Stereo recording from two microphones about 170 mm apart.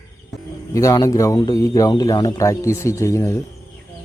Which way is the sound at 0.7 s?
20° left (ahead or behind).